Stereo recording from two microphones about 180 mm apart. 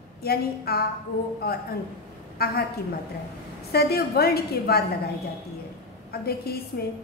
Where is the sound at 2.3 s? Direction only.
60° left (ahead or behind).